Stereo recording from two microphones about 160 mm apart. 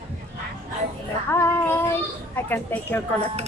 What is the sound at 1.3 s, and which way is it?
Child singing, 15° left (ahead or behind).